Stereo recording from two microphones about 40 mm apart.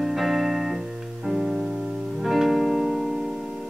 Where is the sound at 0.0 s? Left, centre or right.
Centre.